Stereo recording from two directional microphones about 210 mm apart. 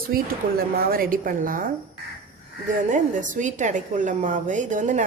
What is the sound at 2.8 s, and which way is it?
A woman's voice, 35° right (ahead or behind).